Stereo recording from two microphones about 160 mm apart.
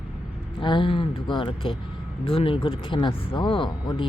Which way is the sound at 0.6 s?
30° left (ahead or behind).